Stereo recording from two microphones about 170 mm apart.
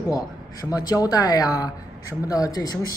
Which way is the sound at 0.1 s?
20° left (ahead or behind).